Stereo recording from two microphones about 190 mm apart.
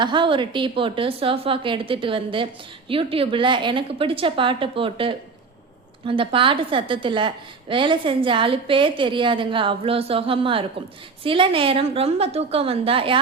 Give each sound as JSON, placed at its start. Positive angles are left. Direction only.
{"t": 0.0, "sound": "a woman's voice", "side_deg": -25}